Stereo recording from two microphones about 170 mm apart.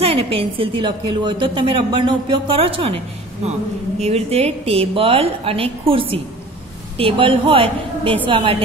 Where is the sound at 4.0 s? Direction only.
35° right (ahead or behind).